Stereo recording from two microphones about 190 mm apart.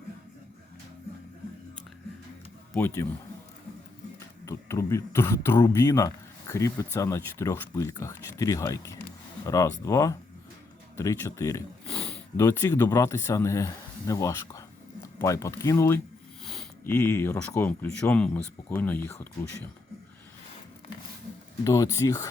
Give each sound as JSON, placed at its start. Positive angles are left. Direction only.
{"t": 2.7, "sound": "speech", "side_deg": 10}
{"t": 4.4, "sound": "speech", "side_deg": 15}
{"t": 11.9, "sound": "sniff", "side_deg": 5}
{"t": 12.4, "sound": "speech", "side_deg": 15}
{"t": 21.6, "sound": "speech", "side_deg": 15}